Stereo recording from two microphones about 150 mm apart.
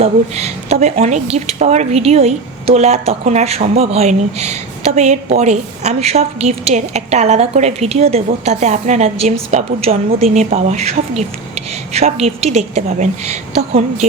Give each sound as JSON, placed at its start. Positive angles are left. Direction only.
{"t": 0.0, "sound": "speech", "side_deg": -45}